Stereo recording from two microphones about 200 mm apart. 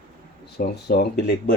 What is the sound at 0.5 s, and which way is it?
Speech, 55° left (ahead or behind).